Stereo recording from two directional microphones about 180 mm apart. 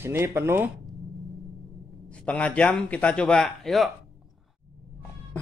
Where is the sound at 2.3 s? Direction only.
5° left (ahead or behind).